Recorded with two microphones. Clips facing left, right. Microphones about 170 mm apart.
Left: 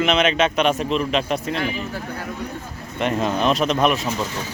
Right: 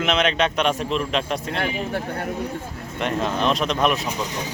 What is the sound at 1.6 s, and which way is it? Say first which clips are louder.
Speech: right 1 dB; 60° right (ahead or behind).